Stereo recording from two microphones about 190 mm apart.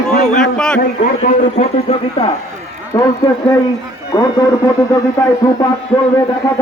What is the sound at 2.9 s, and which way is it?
Speech, 20° left (ahead or behind).